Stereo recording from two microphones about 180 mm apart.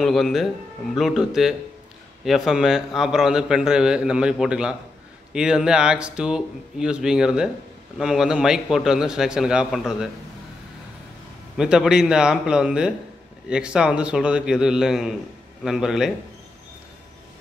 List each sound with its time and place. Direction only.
0.0 s a man's voice: centre (ahead or behind)
11.5 s a man's voice: 5° right (ahead or behind)